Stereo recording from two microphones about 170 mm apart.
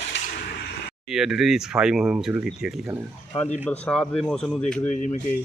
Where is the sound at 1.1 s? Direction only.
5° right (ahead or behind).